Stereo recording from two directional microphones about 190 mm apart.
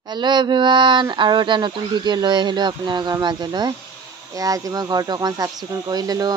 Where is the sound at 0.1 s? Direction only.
25° right (ahead or behind).